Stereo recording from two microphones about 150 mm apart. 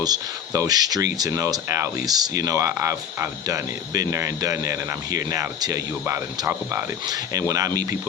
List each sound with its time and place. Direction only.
0.0 s speech: 25° right (ahead or behind)
6.4 s speech: 15° right (ahead or behind)